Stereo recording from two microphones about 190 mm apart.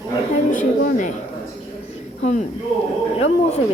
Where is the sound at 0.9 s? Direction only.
40° left (ahead or behind).